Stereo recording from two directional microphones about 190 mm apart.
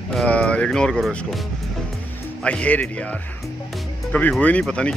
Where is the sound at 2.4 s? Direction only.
5° left (ahead or behind).